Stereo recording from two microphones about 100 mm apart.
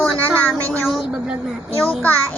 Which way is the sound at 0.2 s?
15° left (ahead or behind).